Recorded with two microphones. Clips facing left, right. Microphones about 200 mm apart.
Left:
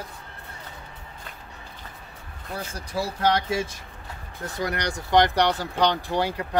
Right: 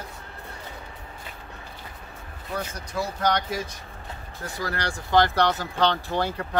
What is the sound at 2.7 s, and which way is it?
Speech, 30° left (ahead or behind).